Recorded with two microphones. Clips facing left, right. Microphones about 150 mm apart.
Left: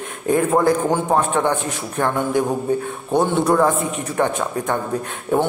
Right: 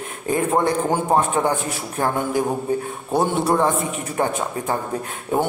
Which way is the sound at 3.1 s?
5° right (ahead or behind).